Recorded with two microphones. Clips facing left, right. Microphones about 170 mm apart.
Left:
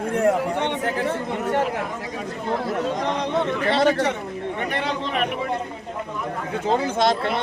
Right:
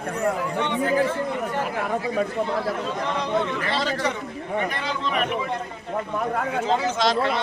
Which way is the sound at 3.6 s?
60° left (ahead or behind).